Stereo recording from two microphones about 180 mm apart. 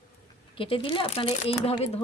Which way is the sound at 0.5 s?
30° left (ahead or behind).